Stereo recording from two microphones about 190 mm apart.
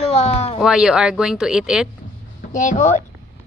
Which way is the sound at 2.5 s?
40° left (ahead or behind).